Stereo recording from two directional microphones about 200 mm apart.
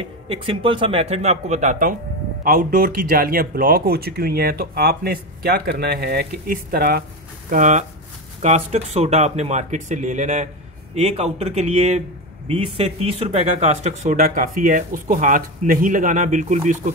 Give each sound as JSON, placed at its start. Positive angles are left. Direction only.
{"t": 0.0, "sound": "speech", "side_deg": -30}